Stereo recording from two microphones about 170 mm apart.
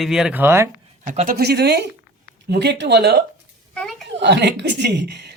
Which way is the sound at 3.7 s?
Centre (ahead or behind).